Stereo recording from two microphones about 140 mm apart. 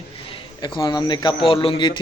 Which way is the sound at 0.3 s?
35° left (ahead or behind).